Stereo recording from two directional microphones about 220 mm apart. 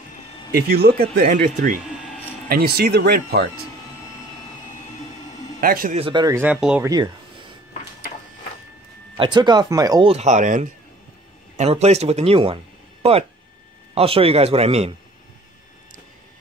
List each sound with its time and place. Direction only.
0.5 s speech: 45° right (ahead or behind)
5.6 s speech: 40° right (ahead or behind)
5.9 s speech: 20° right (ahead or behind); by 6.9 s 5° right (ahead or behind)
6.9 s a sound: 20° right (ahead or behind)
9.1 s speech: 20° right (ahead or behind)
13.9 s speech: 25° right (ahead or behind)